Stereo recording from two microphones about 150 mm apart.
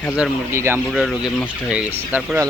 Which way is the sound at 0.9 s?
5° right (ahead or behind).